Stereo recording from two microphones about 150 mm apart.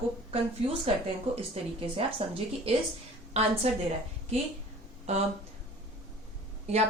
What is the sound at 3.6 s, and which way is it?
Speech, 45° right (ahead or behind).